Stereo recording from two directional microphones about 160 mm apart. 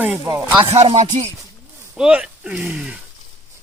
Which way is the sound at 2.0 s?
5° right (ahead or behind).